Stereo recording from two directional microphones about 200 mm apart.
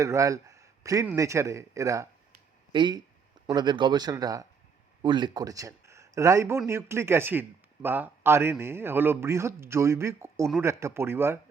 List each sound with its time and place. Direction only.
0.0 s a man's voice: 15° right (ahead or behind)